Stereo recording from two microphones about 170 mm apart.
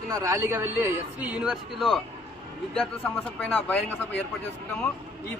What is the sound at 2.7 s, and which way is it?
A man's voice, 10° left (ahead or behind).